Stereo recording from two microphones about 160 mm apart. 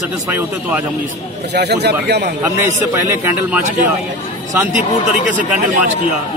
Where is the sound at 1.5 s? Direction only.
90° right.